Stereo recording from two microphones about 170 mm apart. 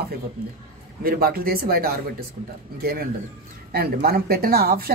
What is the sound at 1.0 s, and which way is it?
Speech, 60° right (ahead or behind).